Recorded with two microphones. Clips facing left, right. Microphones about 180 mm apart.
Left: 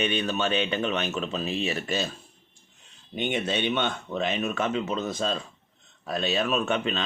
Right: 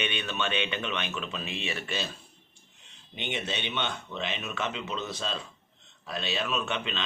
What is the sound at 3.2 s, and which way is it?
Speech, 50° left (ahead or behind).